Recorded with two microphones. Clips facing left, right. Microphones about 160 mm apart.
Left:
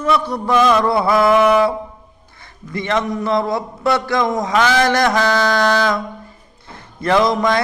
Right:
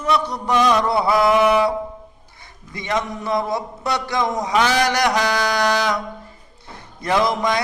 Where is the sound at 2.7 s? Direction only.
15° right (ahead or behind).